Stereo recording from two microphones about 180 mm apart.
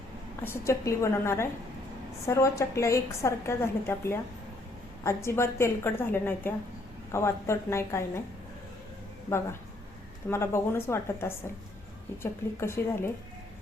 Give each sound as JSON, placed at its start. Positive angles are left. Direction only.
{"t": 0.4, "sound": "a woman's voice", "side_deg": 15}
{"t": 10.2, "sound": "a woman's voice", "side_deg": 15}